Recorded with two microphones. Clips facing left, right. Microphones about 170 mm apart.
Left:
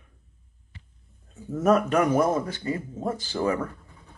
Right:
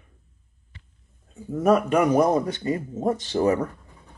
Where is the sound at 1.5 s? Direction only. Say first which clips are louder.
Right 2 dB; 10° right (ahead or behind); by 3.5 s 25° right (ahead or behind).